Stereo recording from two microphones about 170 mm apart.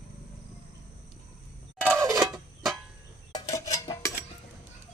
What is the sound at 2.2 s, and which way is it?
Music, centre (ahead or behind).